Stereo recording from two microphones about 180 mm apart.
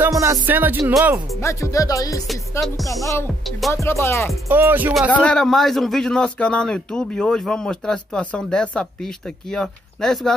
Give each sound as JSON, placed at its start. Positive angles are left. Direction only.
{"t": 0.0, "sound": "music", "side_deg": -15}
{"t": 1.4, "sound": "speech", "side_deg": 15}
{"t": 4.5, "sound": "music", "side_deg": -10}
{"t": 5.1, "sound": "a man's voice", "side_deg": 5}